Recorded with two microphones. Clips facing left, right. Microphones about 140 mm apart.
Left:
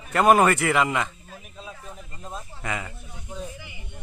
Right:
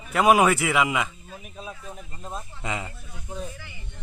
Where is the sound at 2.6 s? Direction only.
20° right (ahead or behind).